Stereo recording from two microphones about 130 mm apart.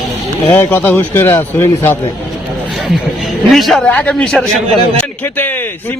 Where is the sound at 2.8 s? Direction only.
Centre (ahead or behind).